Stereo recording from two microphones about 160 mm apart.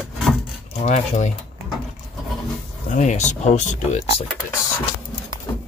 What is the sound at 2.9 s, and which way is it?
Speech, 45° left (ahead or behind).